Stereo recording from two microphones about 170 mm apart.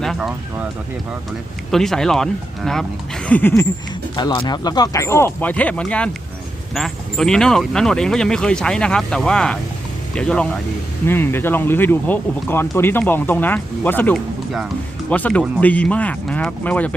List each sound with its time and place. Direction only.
0.0 s speech: centre (ahead or behind)
1.7 s speech: centre (ahead or behind)
4.1 s speech: 25° left (ahead or behind); by 16.9 s 10° left (ahead or behind)